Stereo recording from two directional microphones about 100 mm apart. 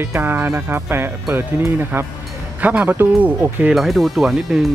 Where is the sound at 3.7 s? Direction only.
Centre (ahead or behind).